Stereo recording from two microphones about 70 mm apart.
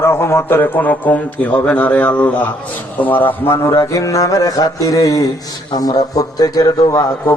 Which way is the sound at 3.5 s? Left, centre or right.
Left.